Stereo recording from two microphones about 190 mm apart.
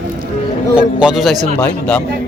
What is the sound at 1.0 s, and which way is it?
Livestock, 5° right (ahead or behind).